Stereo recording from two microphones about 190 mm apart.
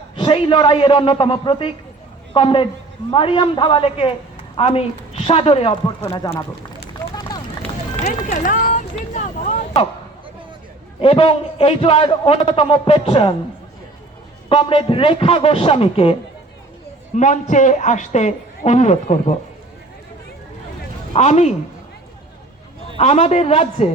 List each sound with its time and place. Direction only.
0.2 s a man's voice: 30° left (ahead or behind)
6.1 s a man's voice: 20° left (ahead or behind)
8.0 s speech: 45° left (ahead or behind)
11.0 s a man's voice: 30° left (ahead or behind)
14.5 s a man's voice: 25° left (ahead or behind)
17.2 s a man's voice: 40° left (ahead or behind)
21.1 s speech: 35° left (ahead or behind)
23.0 s a man's voice: 35° left (ahead or behind)